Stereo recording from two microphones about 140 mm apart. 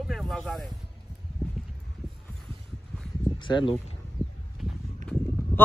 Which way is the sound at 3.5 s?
35° left (ahead or behind).